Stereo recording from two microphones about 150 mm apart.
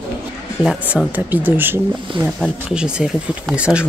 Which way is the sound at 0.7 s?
5° right (ahead or behind).